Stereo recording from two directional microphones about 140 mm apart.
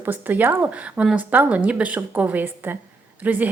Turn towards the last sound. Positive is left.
turn(degrees=-10)  # may be behind; listen again after turning